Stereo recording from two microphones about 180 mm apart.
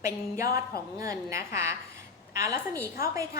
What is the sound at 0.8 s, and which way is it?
A woman's voice, 20° right (ahead or behind).